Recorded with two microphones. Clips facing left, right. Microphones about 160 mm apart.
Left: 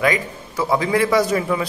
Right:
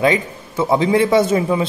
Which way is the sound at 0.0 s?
25° right (ahead or behind).